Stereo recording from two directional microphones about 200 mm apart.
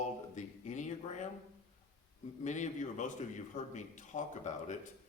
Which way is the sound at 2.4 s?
35° left (ahead or behind).